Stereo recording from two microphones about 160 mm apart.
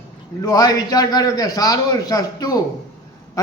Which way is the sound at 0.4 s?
25° left (ahead or behind).